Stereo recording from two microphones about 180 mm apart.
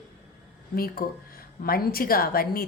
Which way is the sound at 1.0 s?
55° left (ahead or behind).